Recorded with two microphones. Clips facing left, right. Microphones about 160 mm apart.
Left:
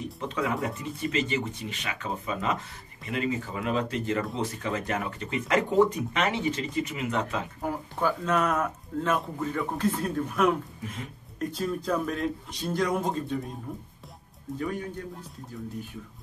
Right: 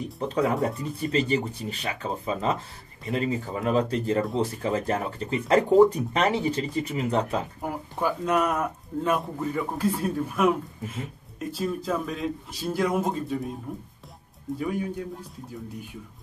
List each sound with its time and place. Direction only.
0.2 s speech: 35° right (ahead or behind)
7.6 s speech: 10° right (ahead or behind)